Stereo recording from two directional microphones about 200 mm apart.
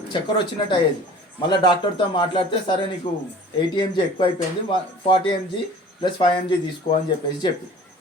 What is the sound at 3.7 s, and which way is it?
Speech, 25° left (ahead or behind).